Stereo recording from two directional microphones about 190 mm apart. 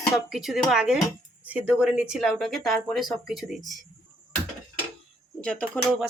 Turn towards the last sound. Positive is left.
turn(degrees=0)  # may be behind; listen again after turning